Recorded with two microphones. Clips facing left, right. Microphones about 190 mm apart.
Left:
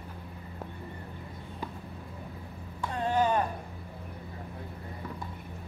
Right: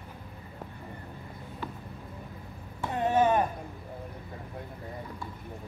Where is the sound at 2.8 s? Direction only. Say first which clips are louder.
Right 3 dB; 20° right (ahead or behind).